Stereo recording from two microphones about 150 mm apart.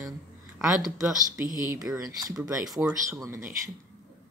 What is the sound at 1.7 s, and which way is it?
Speech, 20° right (ahead or behind).